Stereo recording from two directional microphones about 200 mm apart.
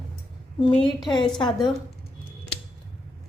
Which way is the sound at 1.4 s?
20° left (ahead or behind).